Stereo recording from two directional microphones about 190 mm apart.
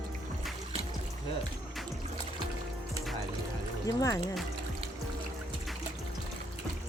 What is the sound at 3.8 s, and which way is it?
Speech, 20° left (ahead or behind).